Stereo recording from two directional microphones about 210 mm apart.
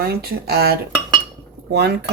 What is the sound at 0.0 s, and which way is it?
Speech, 50° right (ahead or behind).